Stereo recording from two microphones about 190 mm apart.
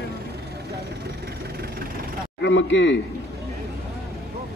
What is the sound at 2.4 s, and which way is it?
Speech, 70° left (ahead or behind).